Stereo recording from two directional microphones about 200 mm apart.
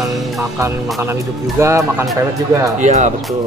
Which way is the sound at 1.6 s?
15° right (ahead or behind).